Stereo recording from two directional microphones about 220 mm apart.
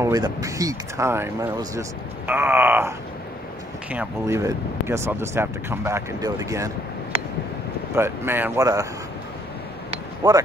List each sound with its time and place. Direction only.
0.0 s speech: 15° right (ahead or behind)
3.9 s speech: 10° right (ahead or behind)
7.9 s speech: 10° right (ahead or behind)
9.8 s a sound: 20° right (ahead or behind)